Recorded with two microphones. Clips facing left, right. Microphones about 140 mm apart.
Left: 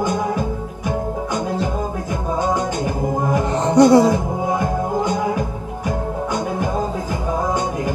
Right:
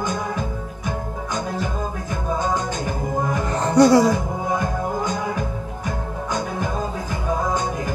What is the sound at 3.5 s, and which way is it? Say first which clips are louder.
Music: left 2 dB; 20° left (ahead or behind).